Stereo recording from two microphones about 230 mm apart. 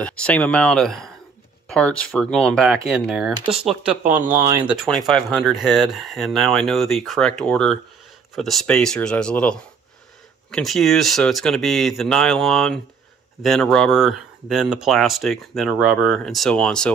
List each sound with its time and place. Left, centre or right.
0.0 s speech: centre
3.8 s speech: right
4.8 s speech: centre